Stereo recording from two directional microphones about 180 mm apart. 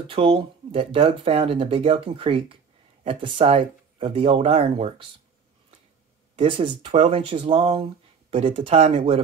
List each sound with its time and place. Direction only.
0.1 s speech: 30° right (ahead or behind)
6.3 s speech: 30° right (ahead or behind)